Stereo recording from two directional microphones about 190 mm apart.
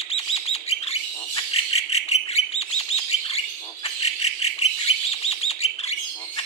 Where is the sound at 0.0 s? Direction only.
35° left (ahead or behind).